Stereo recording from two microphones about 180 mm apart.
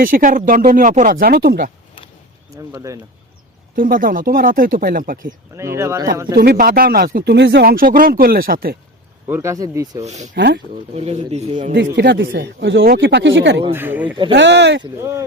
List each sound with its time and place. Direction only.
0.0 s speech: 50° right (ahead or behind)
2.7 s speech: 20° right (ahead or behind)
3.8 s speech: 50° right (ahead or behind)
5.5 s speech: 15° right (ahead or behind)
6.3 s speech: 60° right (ahead or behind)
9.2 s speech: 15° right (ahead or behind)
10.0 s speech: 40° right (ahead or behind)
10.3 s speech: 70° right (ahead or behind)
10.9 s speech: 35° right (ahead or behind)
11.7 s speech: 70° right (ahead or behind)
13.7 s speech: 10° right (ahead or behind)
14.3 s speech: 80° right